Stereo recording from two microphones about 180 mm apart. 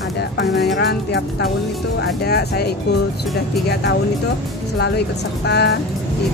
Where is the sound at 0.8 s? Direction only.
70° left (ahead or behind).